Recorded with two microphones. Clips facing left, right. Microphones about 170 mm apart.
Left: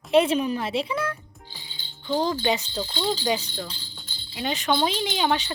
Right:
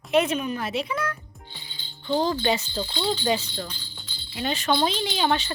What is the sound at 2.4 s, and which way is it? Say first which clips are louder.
Speech: even; 15° left (ahead or behind).